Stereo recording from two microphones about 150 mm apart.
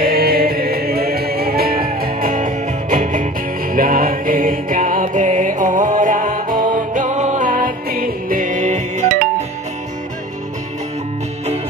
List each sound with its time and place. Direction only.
0.0 s music: 90° right; by 3.3 s 60° right (ahead or behind)
3.7 s music: 70° right (ahead or behind); by 9.0 s 55° right (ahead or behind)